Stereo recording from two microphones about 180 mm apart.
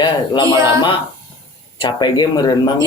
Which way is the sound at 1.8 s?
25° left (ahead or behind).